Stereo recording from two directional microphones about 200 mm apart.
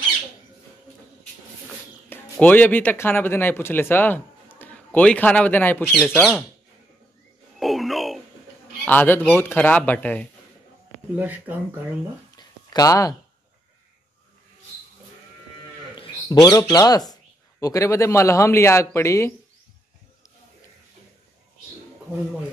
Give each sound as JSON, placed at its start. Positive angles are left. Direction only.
{"t": 2.0, "sound": "speech", "side_deg": 10}
{"t": 7.5, "sound": "a sound", "side_deg": 0}
{"t": 8.8, "sound": "speech", "side_deg": 10}
{"t": 11.1, "sound": "speech", "side_deg": -10}
{"t": 12.4, "sound": "a sound", "side_deg": 20}
{"t": 16.0, "sound": "bird", "side_deg": 20}
{"t": 16.7, "sound": "speech", "side_deg": 20}